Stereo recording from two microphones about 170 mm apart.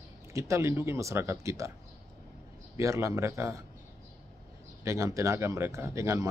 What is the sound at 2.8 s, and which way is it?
Speech, 15° right (ahead or behind).